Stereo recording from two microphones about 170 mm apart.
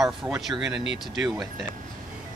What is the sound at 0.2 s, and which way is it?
Speech, 5° right (ahead or behind).